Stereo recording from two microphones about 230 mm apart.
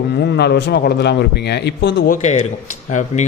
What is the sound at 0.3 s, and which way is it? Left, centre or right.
A man's voice, left.